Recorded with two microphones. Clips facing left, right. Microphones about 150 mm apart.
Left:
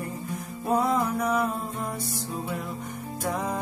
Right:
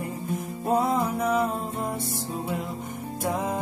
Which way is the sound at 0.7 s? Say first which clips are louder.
Even; 25° right (ahead or behind).